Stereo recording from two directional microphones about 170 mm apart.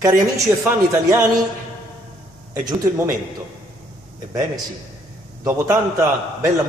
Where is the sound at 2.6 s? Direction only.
15° right (ahead or behind).